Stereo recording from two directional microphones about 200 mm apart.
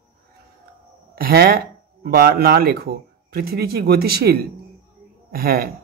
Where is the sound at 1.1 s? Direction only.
50° right (ahead or behind).